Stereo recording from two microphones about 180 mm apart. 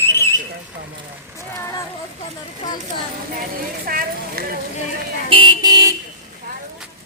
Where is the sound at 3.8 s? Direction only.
55° right (ahead or behind).